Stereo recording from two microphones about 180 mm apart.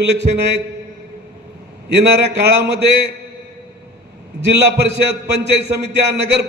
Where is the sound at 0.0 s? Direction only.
70° right (ahead or behind).